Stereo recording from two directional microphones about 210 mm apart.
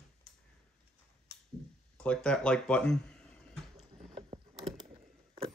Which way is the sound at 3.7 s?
25° right (ahead or behind).